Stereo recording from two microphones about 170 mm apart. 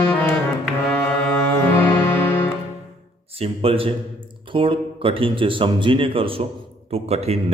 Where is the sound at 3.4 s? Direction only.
35° right (ahead or behind).